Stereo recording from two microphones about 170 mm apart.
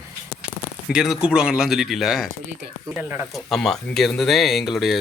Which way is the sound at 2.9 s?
10° right (ahead or behind).